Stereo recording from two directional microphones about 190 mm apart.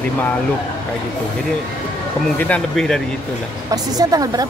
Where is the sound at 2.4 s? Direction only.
5° left (ahead or behind).